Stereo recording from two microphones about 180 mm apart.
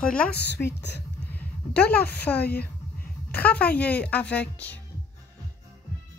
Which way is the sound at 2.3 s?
60° left (ahead or behind).